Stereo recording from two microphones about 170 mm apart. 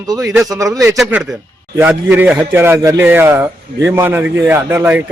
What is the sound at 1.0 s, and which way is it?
Speech, 10° right (ahead or behind).